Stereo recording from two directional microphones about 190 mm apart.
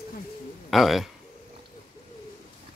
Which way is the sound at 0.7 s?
Centre (ahead or behind).